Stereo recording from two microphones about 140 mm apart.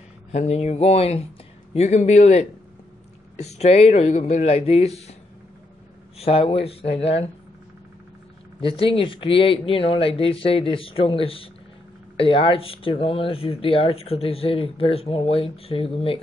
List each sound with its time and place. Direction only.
0.3 s speech: 50° left (ahead or behind)
6.1 s speech: 45° left (ahead or behind)
8.5 s speech: 40° left (ahead or behind)